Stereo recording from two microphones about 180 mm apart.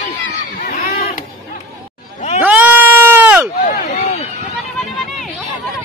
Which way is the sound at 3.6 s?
50° left (ahead or behind).